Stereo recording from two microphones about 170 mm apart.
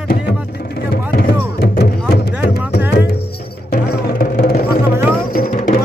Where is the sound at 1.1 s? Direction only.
65° left (ahead or behind).